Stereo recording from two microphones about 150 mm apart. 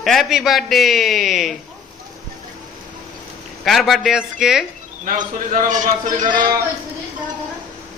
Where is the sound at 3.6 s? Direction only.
Centre (ahead or behind).